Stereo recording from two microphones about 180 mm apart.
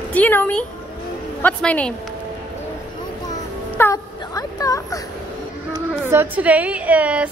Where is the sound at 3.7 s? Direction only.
15° left (ahead or behind).